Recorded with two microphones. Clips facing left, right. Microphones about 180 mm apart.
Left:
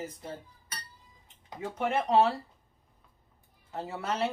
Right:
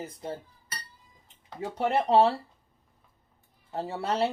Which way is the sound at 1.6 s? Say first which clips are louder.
Right 3 dB; 30° right (ahead or behind).